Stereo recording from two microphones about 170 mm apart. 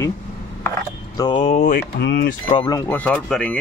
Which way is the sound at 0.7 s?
25° left (ahead or behind).